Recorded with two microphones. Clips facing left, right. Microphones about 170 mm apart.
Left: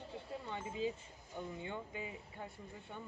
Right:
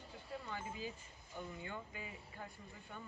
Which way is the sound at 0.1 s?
25° left (ahead or behind).